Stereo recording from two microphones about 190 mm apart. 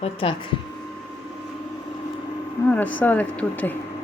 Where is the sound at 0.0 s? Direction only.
30° left (ahead or behind).